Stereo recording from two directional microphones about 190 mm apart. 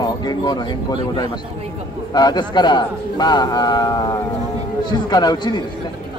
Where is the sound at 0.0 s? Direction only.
20° left (ahead or behind).